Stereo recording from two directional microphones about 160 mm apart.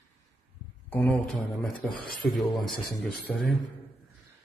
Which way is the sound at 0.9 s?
10° left (ahead or behind).